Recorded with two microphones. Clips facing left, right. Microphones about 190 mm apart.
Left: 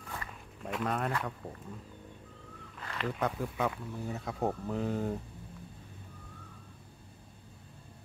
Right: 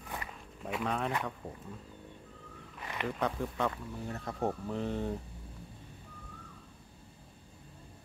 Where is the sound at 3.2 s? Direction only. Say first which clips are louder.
Even; 5° left (ahead or behind).